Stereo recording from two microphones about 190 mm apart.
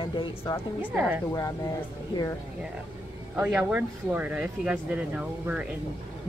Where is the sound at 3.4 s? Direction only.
5° right (ahead or behind).